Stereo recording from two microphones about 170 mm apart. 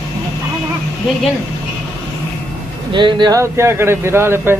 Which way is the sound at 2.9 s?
25° right (ahead or behind).